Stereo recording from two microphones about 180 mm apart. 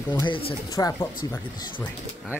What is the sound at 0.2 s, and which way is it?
Speech, 30° left (ahead or behind).